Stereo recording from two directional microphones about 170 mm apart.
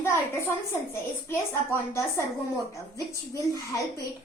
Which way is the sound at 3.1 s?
20° right (ahead or behind).